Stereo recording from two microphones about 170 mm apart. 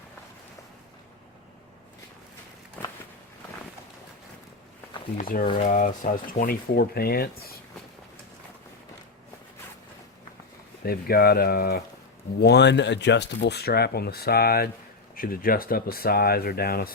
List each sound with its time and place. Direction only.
2.8 s walk: 10° left (ahead or behind)
5.1 s speech: 55° left (ahead or behind)
10.8 s speech: 65° left (ahead or behind)
12.4 s speech: 80° left; by 16.9 s 60° left (ahead or behind)